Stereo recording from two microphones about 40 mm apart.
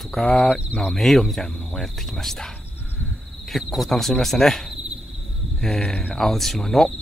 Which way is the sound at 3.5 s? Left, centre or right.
Centre.